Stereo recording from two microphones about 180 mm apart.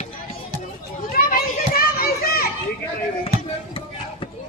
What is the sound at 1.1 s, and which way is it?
Children playing, 55° left (ahead or behind).